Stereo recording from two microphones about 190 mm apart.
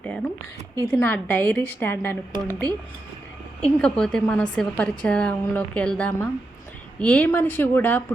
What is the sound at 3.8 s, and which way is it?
A woman's voice, 5° left (ahead or behind).